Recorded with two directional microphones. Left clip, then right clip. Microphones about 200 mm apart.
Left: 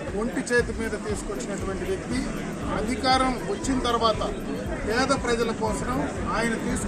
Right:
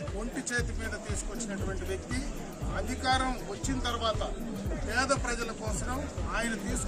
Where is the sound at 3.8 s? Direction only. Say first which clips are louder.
Left 10 dB; 5° right (ahead or behind).